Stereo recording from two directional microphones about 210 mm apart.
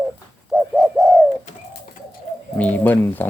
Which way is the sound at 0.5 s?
Centre (ahead or behind).